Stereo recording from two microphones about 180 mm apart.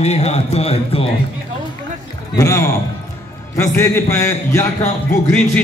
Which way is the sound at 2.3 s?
15° left (ahead or behind).